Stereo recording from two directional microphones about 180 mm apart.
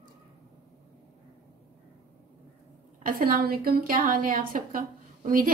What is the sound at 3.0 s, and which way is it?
A woman's voice, 55° right (ahead or behind).